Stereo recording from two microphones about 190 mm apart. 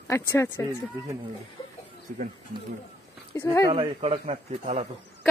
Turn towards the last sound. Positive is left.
turn(degrees=-35)  # may be behind; listen again after turning